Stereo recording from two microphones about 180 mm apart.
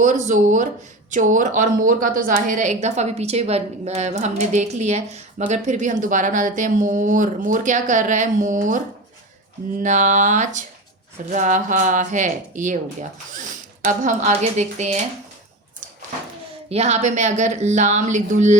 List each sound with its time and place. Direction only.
0.0 s a woman's voice: 45° right (ahead or behind)
9.8 s a woman's voice: 45° right (ahead or behind)
16.6 s a woman's voice: 35° right (ahead or behind)